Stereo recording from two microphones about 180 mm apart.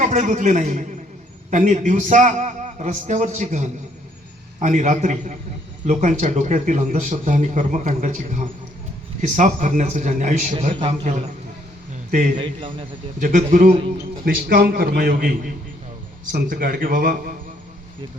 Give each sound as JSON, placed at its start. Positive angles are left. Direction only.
{"t": 0.0, "sound": "a man's voice", "side_deg": -45}
{"t": 12.4, "sound": "a man's voice", "side_deg": -30}
{"t": 13.1, "sound": "a man's voice", "side_deg": -45}